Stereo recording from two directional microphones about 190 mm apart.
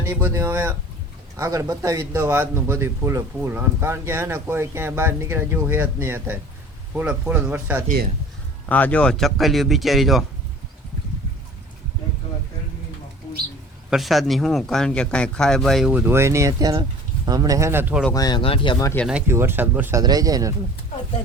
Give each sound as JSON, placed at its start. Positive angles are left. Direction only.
{"t": 0.0, "sound": "a man's voice", "side_deg": -10}
{"t": 8.7, "sound": "speech", "side_deg": 5}
{"t": 13.9, "sound": "a man's voice", "side_deg": 0}
{"t": 18.1, "sound": "speech", "side_deg": 20}
{"t": 19.0, "sound": "a man's voice", "side_deg": -10}